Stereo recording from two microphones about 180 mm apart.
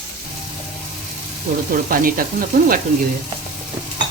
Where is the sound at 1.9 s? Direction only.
50° right (ahead or behind).